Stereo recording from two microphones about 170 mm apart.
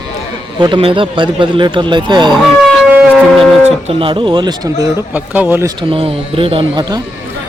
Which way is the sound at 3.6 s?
35° right (ahead or behind).